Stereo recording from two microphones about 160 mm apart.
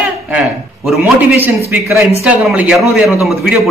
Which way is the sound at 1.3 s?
10° right (ahead or behind).